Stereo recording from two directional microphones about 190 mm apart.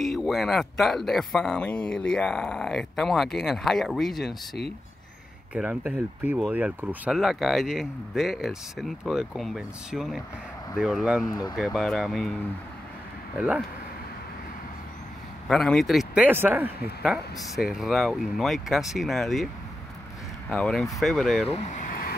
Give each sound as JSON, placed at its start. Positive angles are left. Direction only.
{"t": 0.0, "sound": "speech", "side_deg": 0}
{"t": 5.5, "sound": "speech", "side_deg": -5}
{"t": 11.2, "sound": "speech", "side_deg": 20}
{"t": 11.5, "sound": "speech", "side_deg": 0}
{"t": 13.4, "sound": "speech", "side_deg": -5}
{"t": 15.4, "sound": "speech", "side_deg": 0}
{"t": 21.5, "sound": "vehicle", "side_deg": 35}